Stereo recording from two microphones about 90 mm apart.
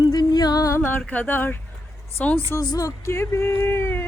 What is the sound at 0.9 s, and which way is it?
Speech, 20° left (ahead or behind).